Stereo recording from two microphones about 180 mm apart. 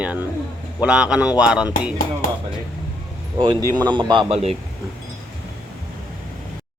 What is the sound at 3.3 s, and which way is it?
A man's voice, 25° right (ahead or behind).